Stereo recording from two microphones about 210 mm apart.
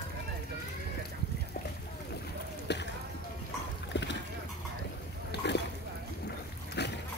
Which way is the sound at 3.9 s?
55° left (ahead or behind).